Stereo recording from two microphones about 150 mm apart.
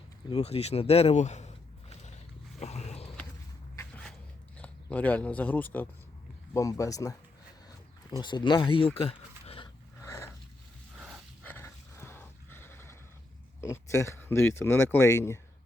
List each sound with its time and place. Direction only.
0.3 s a sound: 40° left (ahead or behind)
4.5 s speech: 10° left (ahead or behind)
6.5 s speech: 20° left (ahead or behind)
9.0 s sheep: 40° left (ahead or behind)
10.0 s dog: 15° left (ahead or behind)
10.9 s a sound: 5° right (ahead or behind)
11.4 s dog: 15° left (ahead or behind)
13.6 s speech: 20° left (ahead or behind)